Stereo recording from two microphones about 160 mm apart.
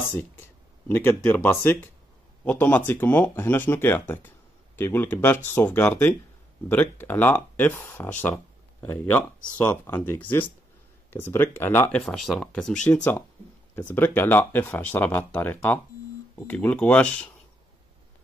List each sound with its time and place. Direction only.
0.9 s speech: 15° left (ahead or behind)
12.0 s speech: centre (ahead or behind)